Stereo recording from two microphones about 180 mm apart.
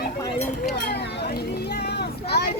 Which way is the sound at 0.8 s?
65° left (ahead or behind).